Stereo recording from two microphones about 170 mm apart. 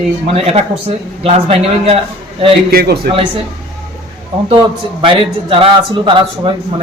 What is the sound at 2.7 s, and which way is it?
Speech, 65° right (ahead or behind).